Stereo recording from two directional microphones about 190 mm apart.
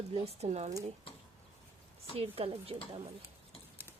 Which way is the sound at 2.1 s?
30° right (ahead or behind).